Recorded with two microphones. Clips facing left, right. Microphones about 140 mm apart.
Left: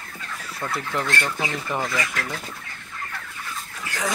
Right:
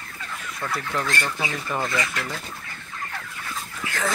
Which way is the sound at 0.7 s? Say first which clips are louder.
Left 1 dB; 20° left (ahead or behind).